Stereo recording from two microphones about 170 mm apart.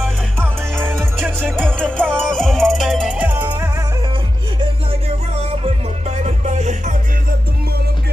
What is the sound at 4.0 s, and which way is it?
Music, 30° right (ahead or behind).